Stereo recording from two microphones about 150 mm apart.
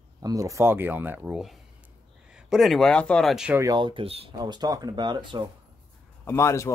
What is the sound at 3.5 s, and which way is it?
Speech, 25° right (ahead or behind).